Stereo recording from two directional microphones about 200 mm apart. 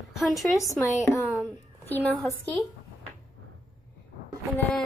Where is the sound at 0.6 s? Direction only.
15° left (ahead or behind).